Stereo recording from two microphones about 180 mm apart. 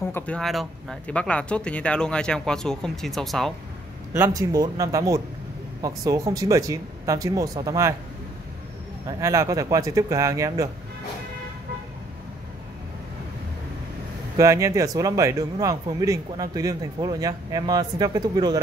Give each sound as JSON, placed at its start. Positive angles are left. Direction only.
{"t": 0.1, "sound": "speech", "side_deg": 5}
{"t": 4.1, "sound": "speech", "side_deg": -15}
{"t": 9.2, "sound": "speech", "side_deg": -15}
{"t": 14.3, "sound": "speech", "side_deg": -15}